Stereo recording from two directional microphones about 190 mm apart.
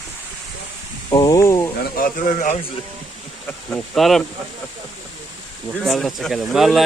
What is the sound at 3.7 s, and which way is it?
Speech, centre (ahead or behind).